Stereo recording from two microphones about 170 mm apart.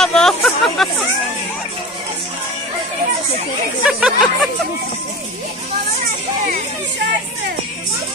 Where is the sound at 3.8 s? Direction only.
5° right (ahead or behind).